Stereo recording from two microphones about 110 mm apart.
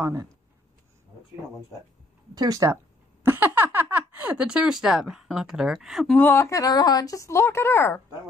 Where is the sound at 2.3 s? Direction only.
35° right (ahead or behind).